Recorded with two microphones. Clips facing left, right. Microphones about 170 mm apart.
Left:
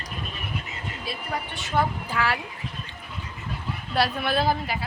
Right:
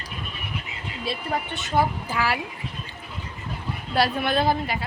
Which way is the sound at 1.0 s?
25° right (ahead or behind).